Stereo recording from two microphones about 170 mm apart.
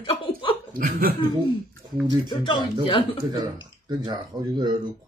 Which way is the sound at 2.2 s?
25° left (ahead or behind).